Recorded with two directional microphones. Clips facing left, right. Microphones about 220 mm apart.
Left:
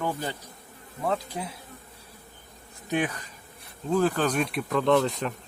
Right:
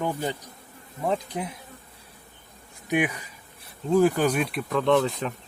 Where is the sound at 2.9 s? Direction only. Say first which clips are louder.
Right 3 dB; 10° right (ahead or behind).